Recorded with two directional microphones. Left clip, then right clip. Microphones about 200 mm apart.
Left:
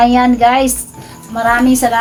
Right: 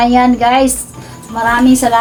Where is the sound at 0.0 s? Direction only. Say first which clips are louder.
Left 1 dB; 10° left (ahead or behind).